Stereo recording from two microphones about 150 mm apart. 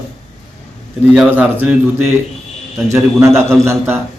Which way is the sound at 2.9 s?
20° right (ahead or behind).